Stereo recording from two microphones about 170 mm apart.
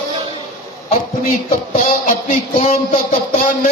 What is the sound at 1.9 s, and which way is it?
Speech, 50° left (ahead or behind).